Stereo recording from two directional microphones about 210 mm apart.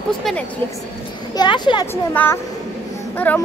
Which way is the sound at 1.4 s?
20° left (ahead or behind).